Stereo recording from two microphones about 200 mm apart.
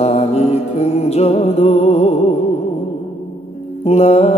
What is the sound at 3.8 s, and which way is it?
Music, 30° left (ahead or behind).